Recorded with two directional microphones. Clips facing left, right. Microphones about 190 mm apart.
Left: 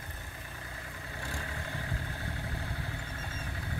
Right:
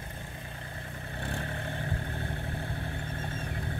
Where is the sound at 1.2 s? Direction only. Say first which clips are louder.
Right 5 dB; 55° right (ahead or behind).